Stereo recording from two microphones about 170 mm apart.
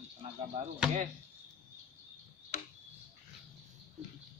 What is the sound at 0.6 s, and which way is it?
Speech, 40° right (ahead or behind).